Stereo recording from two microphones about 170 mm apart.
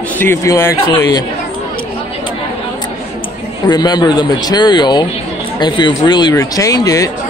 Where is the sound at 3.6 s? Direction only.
25° left (ahead or behind).